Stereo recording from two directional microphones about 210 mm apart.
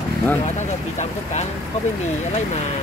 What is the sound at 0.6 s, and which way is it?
Speech, 35° left (ahead or behind).